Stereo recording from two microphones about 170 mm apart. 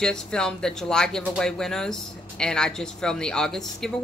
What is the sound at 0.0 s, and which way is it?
Speech, 5° left (ahead or behind).